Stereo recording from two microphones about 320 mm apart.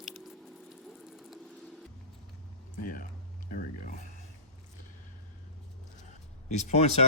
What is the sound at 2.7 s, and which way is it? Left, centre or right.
Speech, left.